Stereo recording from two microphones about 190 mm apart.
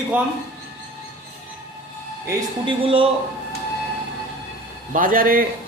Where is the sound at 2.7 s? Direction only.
25° right (ahead or behind).